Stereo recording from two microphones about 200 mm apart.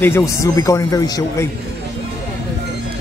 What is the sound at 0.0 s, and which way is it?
Speech, 15° left (ahead or behind).